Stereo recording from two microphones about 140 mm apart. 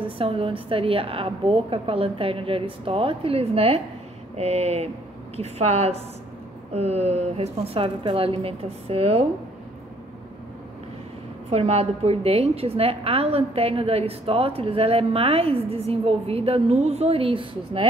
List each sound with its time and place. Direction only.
0.0 s a woman's voice: 40° right (ahead or behind)
11.5 s a woman's voice: 45° right (ahead or behind)